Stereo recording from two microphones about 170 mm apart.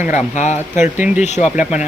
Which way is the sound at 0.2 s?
45° left (ahead or behind).